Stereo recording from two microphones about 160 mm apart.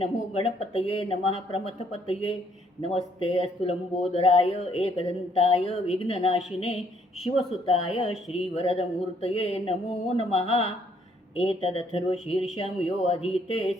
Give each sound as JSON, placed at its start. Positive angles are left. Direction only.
{"t": 0.0, "sound": "speech", "side_deg": 40}